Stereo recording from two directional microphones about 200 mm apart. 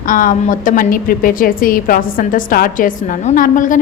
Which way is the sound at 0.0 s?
45° left (ahead or behind).